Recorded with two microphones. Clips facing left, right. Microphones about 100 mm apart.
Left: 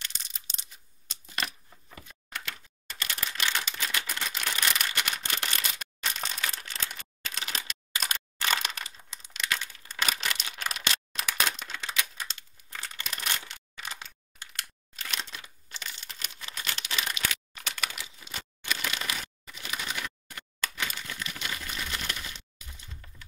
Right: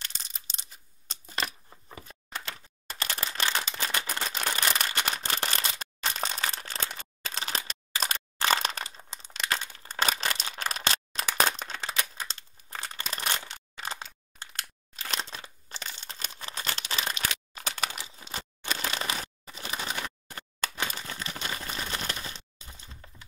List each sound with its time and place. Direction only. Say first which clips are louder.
0.0 s coin: even; 35° right (ahead or behind)
2.3 s typewriter: right 1 dB; 35° right (ahead or behind)
10.2 s a sound: right 2 dB; 35° right (ahead or behind)